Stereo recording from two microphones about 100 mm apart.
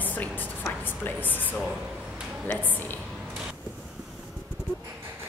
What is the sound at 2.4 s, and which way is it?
Speech, 20° left (ahead or behind).